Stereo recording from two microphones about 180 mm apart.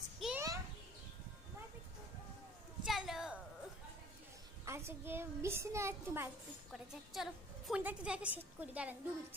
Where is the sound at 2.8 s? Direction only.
Centre (ahead or behind).